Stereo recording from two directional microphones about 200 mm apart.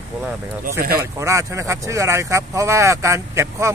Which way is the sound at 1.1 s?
15° right (ahead or behind).